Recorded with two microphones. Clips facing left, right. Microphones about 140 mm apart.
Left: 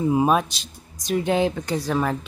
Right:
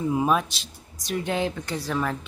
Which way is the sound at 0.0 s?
25° left (ahead or behind).